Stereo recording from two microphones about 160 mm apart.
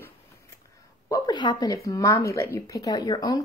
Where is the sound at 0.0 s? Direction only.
20° left (ahead or behind).